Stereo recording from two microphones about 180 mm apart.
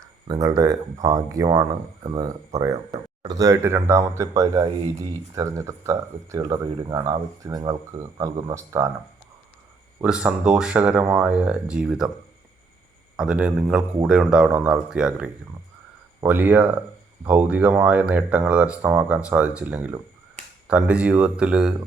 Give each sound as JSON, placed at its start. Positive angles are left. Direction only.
{"t": 0.3, "sound": "speech", "side_deg": -20}
{"t": 10.0, "sound": "speech", "side_deg": -5}
{"t": 13.1, "sound": "speech", "side_deg": -5}